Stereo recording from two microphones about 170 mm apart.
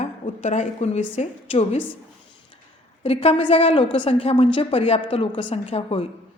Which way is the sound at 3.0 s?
35° left (ahead or behind).